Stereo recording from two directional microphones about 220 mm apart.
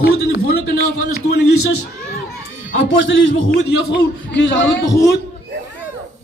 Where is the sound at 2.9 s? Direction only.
60° left (ahead or behind).